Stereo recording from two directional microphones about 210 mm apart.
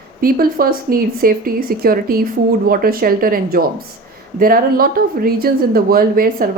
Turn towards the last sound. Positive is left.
turn(degrees=-45)  # may be behind; listen again after turning